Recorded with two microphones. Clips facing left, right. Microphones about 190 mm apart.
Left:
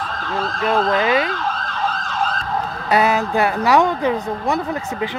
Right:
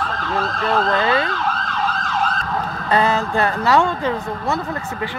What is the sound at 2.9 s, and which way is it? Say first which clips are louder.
Speech: left 1 dB; 15° left (ahead or behind).